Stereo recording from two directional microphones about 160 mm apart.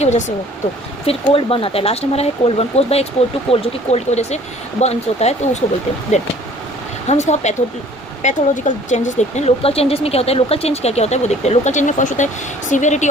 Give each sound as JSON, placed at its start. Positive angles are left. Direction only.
{"t": 0.0, "sound": "speech", "side_deg": 45}
{"t": 1.0, "sound": "speech", "side_deg": 35}